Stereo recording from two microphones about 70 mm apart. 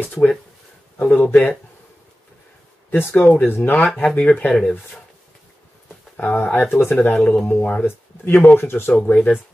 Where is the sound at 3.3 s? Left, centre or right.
Left.